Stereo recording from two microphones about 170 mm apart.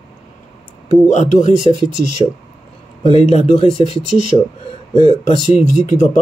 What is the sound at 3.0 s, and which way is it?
Speech, 40° left (ahead or behind).